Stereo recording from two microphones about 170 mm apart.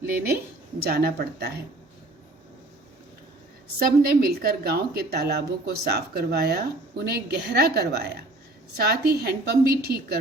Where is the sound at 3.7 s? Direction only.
65° right (ahead or behind).